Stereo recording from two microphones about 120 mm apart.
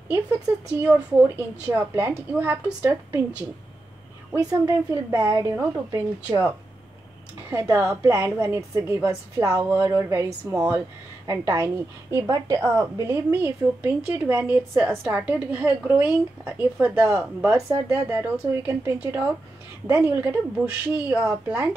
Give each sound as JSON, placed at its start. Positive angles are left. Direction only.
{"t": 0.7, "sound": "a woman's voice", "side_deg": -20}
{"t": 4.4, "sound": "a woman's voice", "side_deg": -25}
{"t": 7.4, "sound": "a woman's voice", "side_deg": -20}